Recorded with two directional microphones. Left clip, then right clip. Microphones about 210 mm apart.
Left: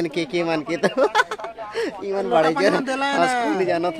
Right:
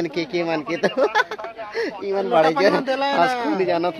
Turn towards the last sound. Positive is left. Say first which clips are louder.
# right 1 dB
turn(degrees=-20)  # may be behind; listen again after turning